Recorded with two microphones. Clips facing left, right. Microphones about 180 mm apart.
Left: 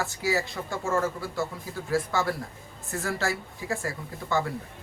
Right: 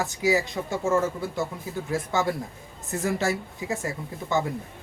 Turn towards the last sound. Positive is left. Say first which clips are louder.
# right 2 dB
turn(degrees=-20)  # may be behind; listen again after turning